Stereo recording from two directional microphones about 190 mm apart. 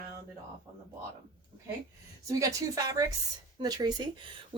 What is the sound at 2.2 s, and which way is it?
Speech, 15° right (ahead or behind).